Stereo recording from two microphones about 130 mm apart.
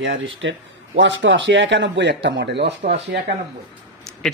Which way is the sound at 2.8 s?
75° right (ahead or behind).